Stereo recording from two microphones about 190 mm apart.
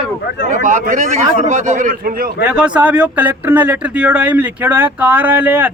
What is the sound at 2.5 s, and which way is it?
Speech, 5° right (ahead or behind).